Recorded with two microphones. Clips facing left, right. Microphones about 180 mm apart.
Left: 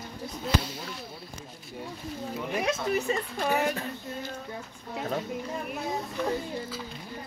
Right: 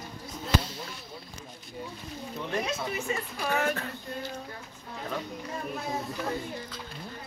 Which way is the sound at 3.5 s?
15° left (ahead or behind).